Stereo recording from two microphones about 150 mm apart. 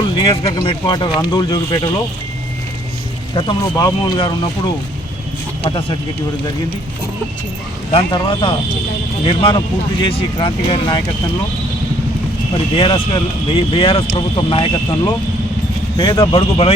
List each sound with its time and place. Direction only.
0.0 s speech: 35° left (ahead or behind)
3.3 s speech: 30° left (ahead or behind)
7.9 s speech: 30° left (ahead or behind)
12.7 s speech: 35° left (ahead or behind)